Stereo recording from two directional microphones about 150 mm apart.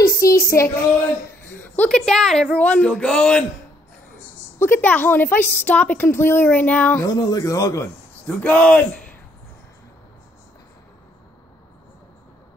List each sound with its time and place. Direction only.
0.0 s a sound: 20° left (ahead or behind)
1.6 s speech: 10° left (ahead or behind)
4.6 s speech: 15° left (ahead or behind)
7.0 s speech: 25° left (ahead or behind)
8.3 s speech: 10° left (ahead or behind)